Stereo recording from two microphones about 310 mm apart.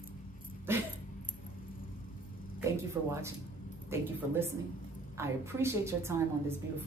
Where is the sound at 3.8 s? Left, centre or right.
Centre.